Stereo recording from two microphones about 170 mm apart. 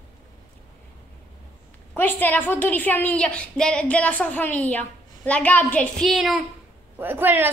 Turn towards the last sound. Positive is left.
turn(degrees=-10)  # may be behind; listen again after turning